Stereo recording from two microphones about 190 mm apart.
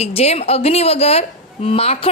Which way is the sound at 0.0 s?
30° left (ahead or behind).